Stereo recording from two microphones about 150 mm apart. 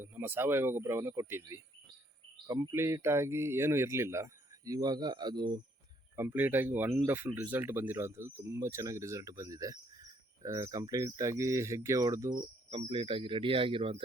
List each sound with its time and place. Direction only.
0.0 s speech: 15° right (ahead or behind); by 5.6 s 30° right (ahead or behind)
6.1 s speech: 15° right (ahead or behind)
12.9 s speech: 35° right (ahead or behind)